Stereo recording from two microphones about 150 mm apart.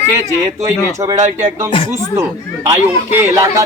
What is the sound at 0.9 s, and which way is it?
Speech, 20° right (ahead or behind).